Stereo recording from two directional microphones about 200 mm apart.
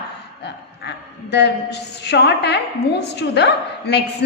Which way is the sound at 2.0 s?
55° left (ahead or behind).